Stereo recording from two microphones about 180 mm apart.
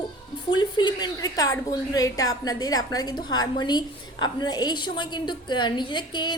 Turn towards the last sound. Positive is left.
turn(degrees=25)  # may be behind; listen again after turning